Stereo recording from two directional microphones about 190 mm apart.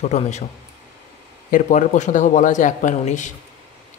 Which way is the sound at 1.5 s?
40° left (ahead or behind).